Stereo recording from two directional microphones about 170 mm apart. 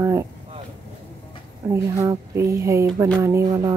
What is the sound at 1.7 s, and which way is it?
A woman's voice, 20° right (ahead or behind).